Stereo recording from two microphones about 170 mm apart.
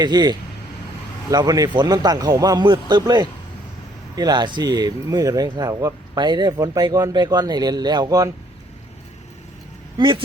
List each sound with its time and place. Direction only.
0.0 s speech: 25° right (ahead or behind)
10.0 s speech: 30° right (ahead or behind)